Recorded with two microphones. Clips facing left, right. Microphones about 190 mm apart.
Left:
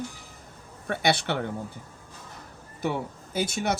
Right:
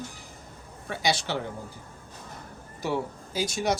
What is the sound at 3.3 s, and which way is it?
Speech, 55° left (ahead or behind).